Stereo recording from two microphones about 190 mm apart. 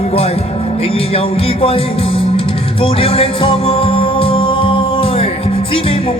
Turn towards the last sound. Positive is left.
turn(degrees=30)  # may be behind; listen again after turning